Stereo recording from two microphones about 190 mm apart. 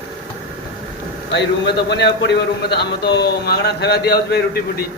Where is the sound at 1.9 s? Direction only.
60° left (ahead or behind).